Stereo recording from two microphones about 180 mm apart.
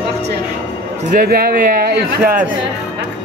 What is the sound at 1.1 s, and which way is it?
Speech, 55° right (ahead or behind).